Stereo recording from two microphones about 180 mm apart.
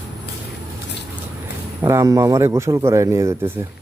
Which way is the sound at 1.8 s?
15° right (ahead or behind).